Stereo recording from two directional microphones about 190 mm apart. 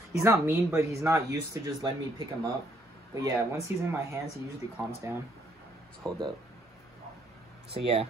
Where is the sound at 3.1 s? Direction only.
15° right (ahead or behind).